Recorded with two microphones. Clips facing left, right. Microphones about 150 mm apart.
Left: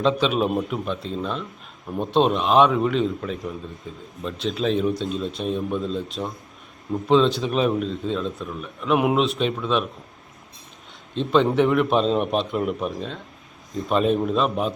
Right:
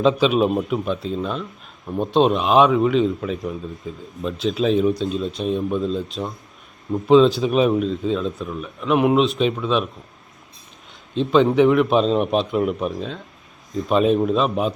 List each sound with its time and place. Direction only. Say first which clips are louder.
0.0 s speech: right 4 dB; 5° right (ahead or behind)
11.1 s speech: right 3 dB; centre (ahead or behind)